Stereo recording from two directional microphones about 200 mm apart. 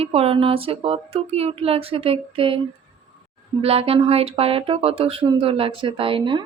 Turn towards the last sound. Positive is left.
turn(degrees=-25)  # may be behind; listen again after turning